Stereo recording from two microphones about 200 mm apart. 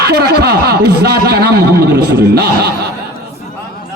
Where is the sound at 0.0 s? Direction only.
55° right (ahead or behind).